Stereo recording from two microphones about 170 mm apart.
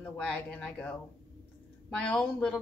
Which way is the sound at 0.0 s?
5° left (ahead or behind).